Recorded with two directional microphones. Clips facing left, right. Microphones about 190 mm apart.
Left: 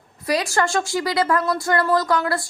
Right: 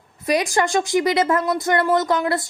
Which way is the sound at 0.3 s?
20° right (ahead or behind).